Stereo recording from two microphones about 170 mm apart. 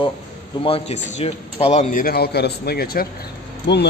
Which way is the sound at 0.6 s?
35° left (ahead or behind).